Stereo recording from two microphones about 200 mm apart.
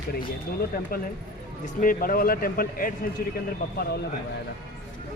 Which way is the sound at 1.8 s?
45° left (ahead or behind).